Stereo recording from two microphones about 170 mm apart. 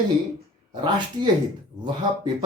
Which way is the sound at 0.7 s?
25° right (ahead or behind).